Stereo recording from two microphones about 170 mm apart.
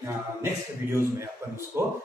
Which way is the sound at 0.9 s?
15° right (ahead or behind).